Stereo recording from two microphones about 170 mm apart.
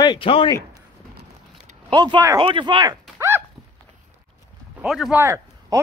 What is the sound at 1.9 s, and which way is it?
Speech, 25° right (ahead or behind).